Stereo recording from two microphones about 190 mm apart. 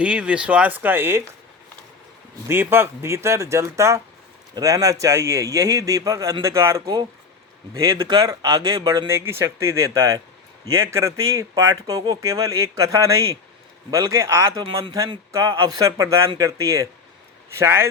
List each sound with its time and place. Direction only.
0.0 s speech: 5° right (ahead or behind)
2.5 s speech: 10° right (ahead or behind)